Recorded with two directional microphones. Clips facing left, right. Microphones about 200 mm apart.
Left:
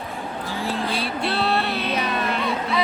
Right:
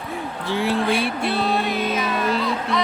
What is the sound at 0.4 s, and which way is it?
Speech, 70° right (ahead or behind).